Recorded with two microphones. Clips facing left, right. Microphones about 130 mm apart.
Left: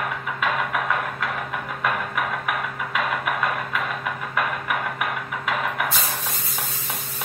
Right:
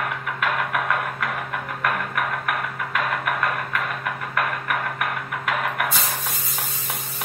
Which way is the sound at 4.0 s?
Centre (ahead or behind).